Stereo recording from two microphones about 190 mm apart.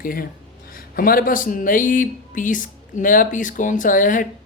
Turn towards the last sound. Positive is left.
turn(degrees=45)  # may be behind; listen again after turning